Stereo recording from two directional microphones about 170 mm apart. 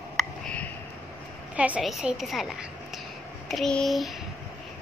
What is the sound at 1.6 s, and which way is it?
Speech, 5° right (ahead or behind).